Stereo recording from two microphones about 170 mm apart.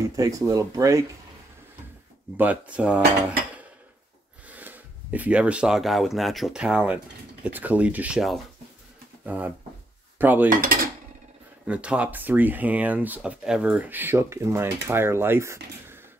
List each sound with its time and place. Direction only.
0.1 s speech: 20° right (ahead or behind)
2.3 s speech: 10° right (ahead or behind)
10.1 s cutlery: 10° right (ahead or behind)
10.6 s cutlery: 55° right (ahead or behind)
11.6 s speech: 5° right (ahead or behind)